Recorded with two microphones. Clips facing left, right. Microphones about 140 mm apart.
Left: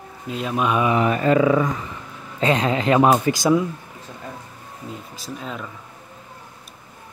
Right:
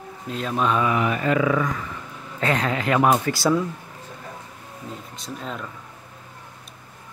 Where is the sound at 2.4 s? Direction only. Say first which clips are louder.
Left 4 dB; 20° left (ahead or behind).